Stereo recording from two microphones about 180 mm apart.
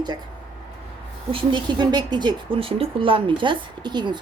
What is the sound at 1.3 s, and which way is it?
Speech, 25° right (ahead or behind).